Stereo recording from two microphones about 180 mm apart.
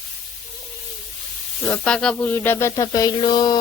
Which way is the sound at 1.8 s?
5° left (ahead or behind).